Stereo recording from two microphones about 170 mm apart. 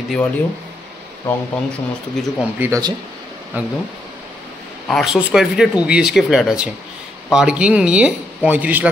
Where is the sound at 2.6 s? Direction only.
20° right (ahead or behind).